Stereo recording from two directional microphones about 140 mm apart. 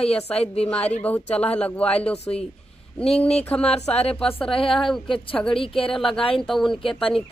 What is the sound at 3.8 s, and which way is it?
Speech, 45° left (ahead or behind).